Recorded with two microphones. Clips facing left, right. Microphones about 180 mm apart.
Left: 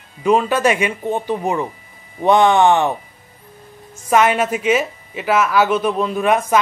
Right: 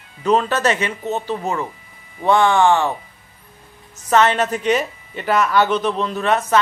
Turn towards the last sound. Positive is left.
turn(degrees=10)  # may be behind; listen again after turning